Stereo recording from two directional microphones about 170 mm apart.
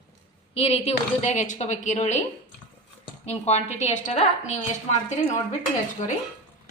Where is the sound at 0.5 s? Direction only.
35° left (ahead or behind).